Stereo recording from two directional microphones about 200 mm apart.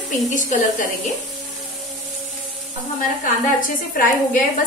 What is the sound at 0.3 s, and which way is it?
Speech, 40° left (ahead or behind).